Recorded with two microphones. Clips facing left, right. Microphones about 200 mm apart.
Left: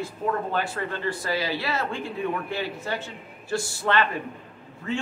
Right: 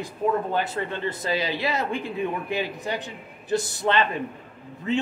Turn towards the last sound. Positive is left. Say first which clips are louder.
# right 4 dB
turn(degrees=-20)  # may be behind; listen again after turning